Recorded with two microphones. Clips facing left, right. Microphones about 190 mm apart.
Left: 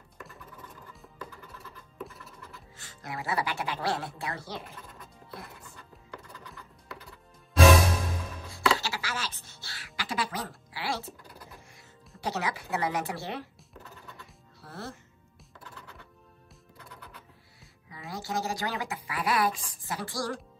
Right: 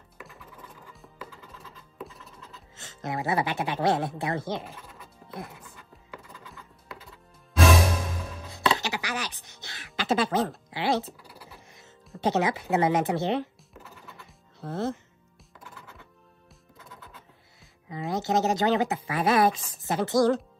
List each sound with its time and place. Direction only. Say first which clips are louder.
1.6 s music: even; 20° right (ahead or behind)
2.5 s speech: right 2 dB; 25° right (ahead or behind)
5.3 s music: right 6 dB; 20° right (ahead or behind)
8.5 s music: right 1 dB; 20° right (ahead or behind)
12.2 s speech: right 7 dB; 20° right (ahead or behind)
17.8 s speech: right 9 dB; 20° right (ahead or behind)